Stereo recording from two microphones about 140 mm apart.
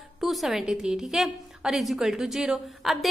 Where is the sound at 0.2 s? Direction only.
Centre (ahead or behind).